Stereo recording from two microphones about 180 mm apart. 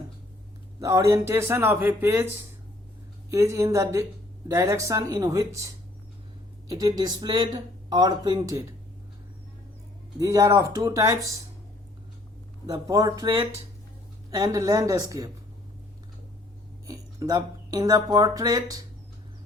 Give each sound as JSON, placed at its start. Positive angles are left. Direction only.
{"t": 0.8, "sound": "speech", "side_deg": -15}
{"t": 3.2, "sound": "speech", "side_deg": -15}
{"t": 10.2, "sound": "speech", "side_deg": -20}
{"t": 12.6, "sound": "speech", "side_deg": -20}
{"t": 14.3, "sound": "speech", "side_deg": -20}
{"t": 16.8, "sound": "speech", "side_deg": -20}